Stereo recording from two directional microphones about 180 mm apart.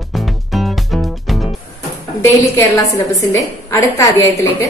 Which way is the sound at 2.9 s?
15° left (ahead or behind).